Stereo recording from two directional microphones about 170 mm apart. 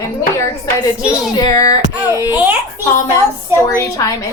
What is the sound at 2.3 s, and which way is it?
Speech, 10° right (ahead or behind).